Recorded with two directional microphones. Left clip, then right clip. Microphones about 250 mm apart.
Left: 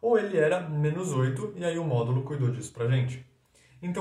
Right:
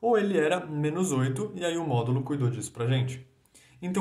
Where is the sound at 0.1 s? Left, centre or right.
Right.